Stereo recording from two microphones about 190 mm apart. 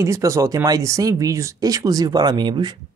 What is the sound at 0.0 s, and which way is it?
Speech, 15° right (ahead or behind).